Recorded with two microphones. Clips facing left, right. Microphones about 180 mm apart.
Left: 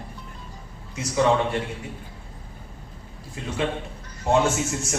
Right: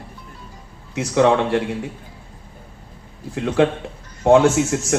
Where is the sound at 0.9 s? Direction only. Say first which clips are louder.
Right 5 dB; 75° right (ahead or behind).